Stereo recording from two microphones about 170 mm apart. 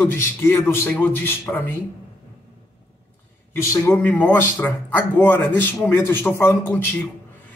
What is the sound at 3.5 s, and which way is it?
A man's voice, 15° left (ahead or behind).